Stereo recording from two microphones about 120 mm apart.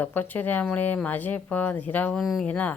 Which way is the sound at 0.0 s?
15° left (ahead or behind).